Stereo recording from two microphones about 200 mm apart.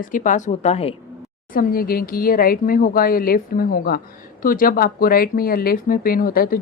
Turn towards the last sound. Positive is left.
turn(degrees=45)  # may be behind; listen again after turning